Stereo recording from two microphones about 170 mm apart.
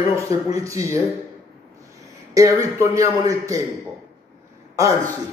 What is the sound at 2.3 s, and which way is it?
Speech, 20° right (ahead or behind).